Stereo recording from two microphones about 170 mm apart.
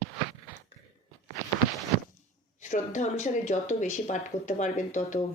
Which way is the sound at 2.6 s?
45° left (ahead or behind).